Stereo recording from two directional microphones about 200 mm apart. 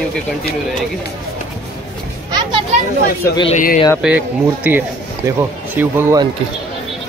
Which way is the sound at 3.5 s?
40° left (ahead or behind).